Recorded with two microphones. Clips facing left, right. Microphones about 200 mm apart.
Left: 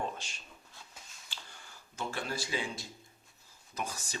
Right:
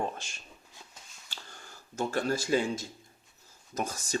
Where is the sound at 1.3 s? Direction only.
45° right (ahead or behind).